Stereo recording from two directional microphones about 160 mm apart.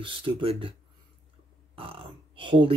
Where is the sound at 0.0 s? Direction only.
35° right (ahead or behind).